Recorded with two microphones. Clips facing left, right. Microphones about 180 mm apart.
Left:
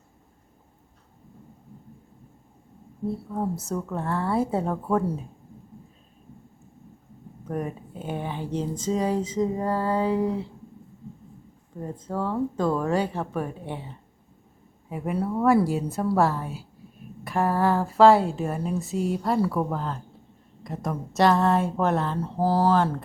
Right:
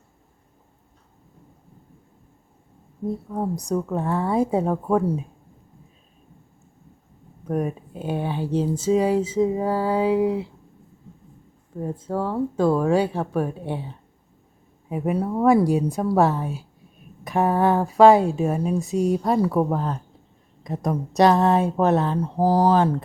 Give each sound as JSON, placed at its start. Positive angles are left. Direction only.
{"t": 3.1, "sound": "speech", "side_deg": -15}
{"t": 7.4, "sound": "speech", "side_deg": -15}
{"t": 11.8, "sound": "speech", "side_deg": -10}
{"t": 14.8, "sound": "speech", "side_deg": -20}